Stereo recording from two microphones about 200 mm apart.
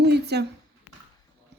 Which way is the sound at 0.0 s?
55° right (ahead or behind).